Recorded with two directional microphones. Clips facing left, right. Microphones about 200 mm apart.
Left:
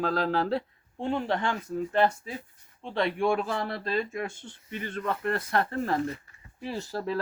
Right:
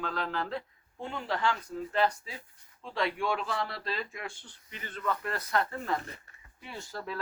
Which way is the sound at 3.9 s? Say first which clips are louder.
Left 9 dB; 25° left (ahead or behind).